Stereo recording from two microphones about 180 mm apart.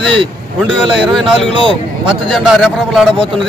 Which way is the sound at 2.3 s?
Centre (ahead or behind).